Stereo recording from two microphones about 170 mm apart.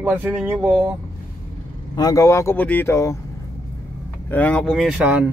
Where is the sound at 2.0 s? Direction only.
20° left (ahead or behind).